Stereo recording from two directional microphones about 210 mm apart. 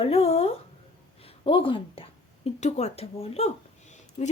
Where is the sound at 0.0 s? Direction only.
30° left (ahead or behind).